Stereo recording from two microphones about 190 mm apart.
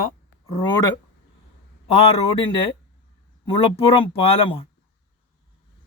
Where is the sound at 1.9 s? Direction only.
30° left (ahead or behind).